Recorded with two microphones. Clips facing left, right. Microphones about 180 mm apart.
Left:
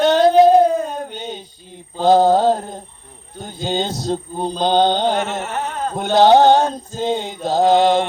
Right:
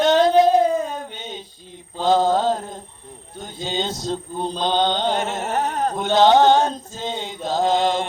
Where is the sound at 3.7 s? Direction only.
35° left (ahead or behind).